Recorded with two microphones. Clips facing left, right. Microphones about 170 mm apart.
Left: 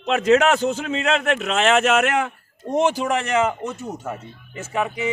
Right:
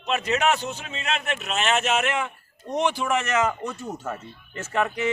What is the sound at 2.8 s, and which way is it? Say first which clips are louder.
A man's voice: even; 40° left (ahead or behind).